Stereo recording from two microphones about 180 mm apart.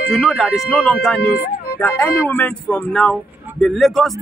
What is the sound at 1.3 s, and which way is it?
Music, 55° left (ahead or behind).